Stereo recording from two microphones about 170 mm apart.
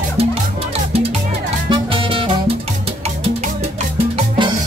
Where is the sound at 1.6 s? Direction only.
30° right (ahead or behind).